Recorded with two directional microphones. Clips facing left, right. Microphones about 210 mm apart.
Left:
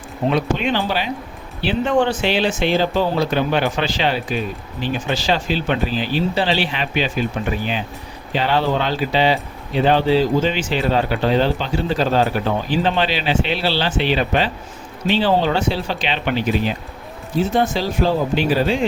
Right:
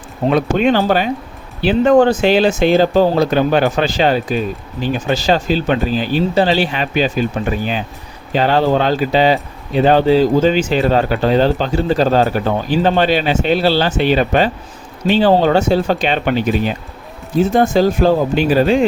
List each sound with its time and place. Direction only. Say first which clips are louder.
0.3 s speech: right 6 dB; 45° right (ahead or behind)
8.3 s speech: right 5 dB; 45° right (ahead or behind)